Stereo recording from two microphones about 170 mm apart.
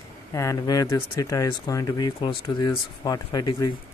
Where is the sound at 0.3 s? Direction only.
20° left (ahead or behind).